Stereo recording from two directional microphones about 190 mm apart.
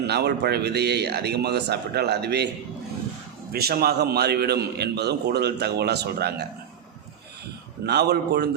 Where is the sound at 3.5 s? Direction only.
55° right (ahead or behind).